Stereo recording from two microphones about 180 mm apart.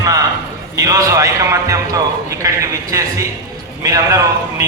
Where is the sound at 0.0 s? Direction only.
20° right (ahead or behind).